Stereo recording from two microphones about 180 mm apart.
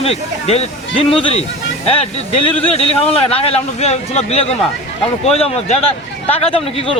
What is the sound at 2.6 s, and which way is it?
Speech, 35° left (ahead or behind).